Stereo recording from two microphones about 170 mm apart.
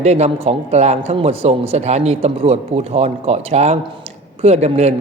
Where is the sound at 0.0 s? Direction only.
40° right (ahead or behind).